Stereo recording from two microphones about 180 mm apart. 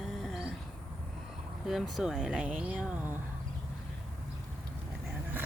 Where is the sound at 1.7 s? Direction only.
Centre (ahead or behind).